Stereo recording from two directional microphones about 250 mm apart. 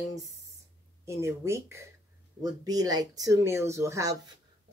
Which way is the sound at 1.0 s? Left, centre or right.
Centre.